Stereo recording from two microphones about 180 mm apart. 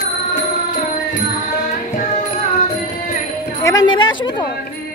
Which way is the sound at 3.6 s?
20° left (ahead or behind).